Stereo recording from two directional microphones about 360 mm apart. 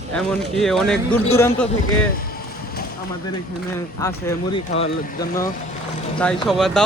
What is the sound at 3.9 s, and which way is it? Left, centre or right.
Speech, centre.